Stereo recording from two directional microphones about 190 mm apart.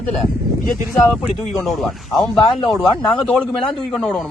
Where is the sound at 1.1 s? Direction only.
Centre (ahead or behind).